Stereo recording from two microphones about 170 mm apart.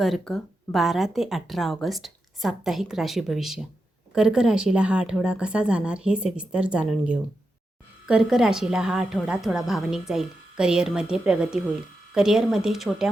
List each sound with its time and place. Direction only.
0.0 s a woman's voice: centre (ahead or behind)